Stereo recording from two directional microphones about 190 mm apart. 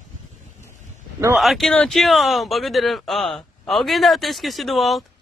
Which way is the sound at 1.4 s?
Centre (ahead or behind).